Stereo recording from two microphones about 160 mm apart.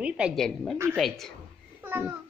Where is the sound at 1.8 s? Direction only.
10° right (ahead or behind).